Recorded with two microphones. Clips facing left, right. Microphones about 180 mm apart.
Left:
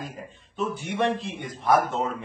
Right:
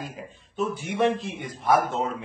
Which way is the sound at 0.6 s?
Centre (ahead or behind).